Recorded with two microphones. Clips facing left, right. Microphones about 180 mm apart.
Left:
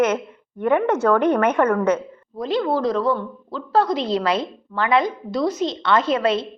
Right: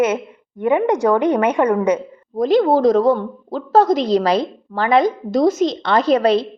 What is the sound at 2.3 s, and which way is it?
A woman's voice, 45° right (ahead or behind).